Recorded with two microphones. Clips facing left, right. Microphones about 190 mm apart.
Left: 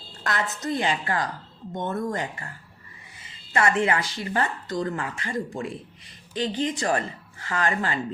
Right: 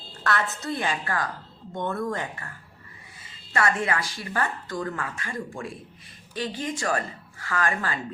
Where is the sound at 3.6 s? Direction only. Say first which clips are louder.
Left 3 dB; 20° left (ahead or behind).